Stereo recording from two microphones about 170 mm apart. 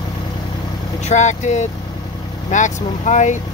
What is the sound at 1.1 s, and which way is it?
Speech, 45° left (ahead or behind).